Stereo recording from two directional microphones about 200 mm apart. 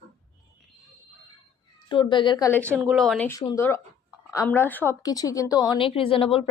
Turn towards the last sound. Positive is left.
turn(degrees=25)  # may be behind; listen again after turning